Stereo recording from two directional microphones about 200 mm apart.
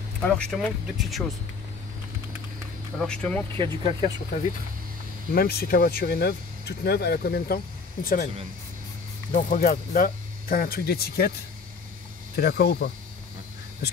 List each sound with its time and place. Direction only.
0.3 s speech: 5° left (ahead or behind)
3.0 s speech: 5° left (ahead or behind)
3.8 s speech: 35° left (ahead or behind)
5.3 s speech: 50° left (ahead or behind)
9.3 s speech: 45° left (ahead or behind)
12.4 s speech: 50° left (ahead or behind)